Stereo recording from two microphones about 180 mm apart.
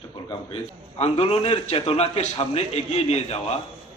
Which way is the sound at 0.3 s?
35° left (ahead or behind).